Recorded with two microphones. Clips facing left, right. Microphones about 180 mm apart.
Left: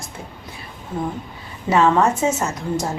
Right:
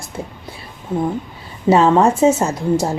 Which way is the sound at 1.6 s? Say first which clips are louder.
Right 4 dB; 30° right (ahead or behind).